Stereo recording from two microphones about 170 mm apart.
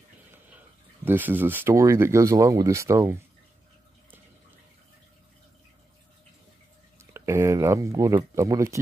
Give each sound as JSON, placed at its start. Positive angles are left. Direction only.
{"t": 0.3, "sound": "speech", "side_deg": -10}
{"t": 7.0, "sound": "speech", "side_deg": -15}